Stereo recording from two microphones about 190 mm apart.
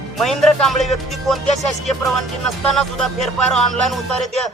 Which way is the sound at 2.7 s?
Centre (ahead or behind).